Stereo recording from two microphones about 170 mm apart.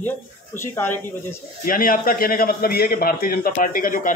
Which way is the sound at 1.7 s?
55° left (ahead or behind).